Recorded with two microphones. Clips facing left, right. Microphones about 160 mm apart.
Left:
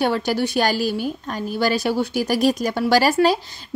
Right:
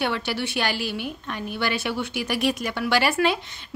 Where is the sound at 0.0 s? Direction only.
40° left (ahead or behind).